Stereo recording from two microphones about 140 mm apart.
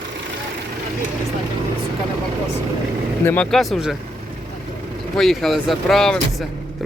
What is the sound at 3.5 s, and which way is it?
Speech, centre (ahead or behind).